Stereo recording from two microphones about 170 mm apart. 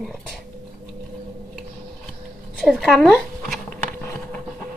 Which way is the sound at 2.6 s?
Centre (ahead or behind).